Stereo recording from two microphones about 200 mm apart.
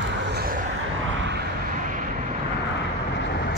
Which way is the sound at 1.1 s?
65° right (ahead or behind).